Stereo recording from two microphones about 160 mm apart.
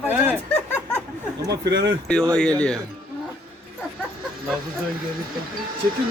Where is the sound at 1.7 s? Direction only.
90° right.